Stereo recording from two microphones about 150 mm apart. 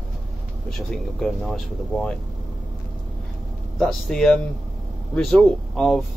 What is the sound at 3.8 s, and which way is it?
Speech, 5° left (ahead or behind).